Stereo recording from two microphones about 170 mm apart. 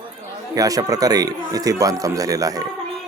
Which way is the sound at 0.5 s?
20° right (ahead or behind).